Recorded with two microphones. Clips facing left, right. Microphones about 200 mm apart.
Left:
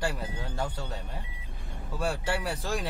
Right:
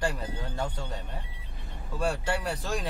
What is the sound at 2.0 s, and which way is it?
Speech, 5° left (ahead or behind).